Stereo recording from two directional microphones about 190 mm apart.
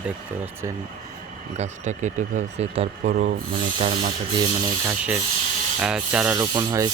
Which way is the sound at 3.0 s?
50° right (ahead or behind).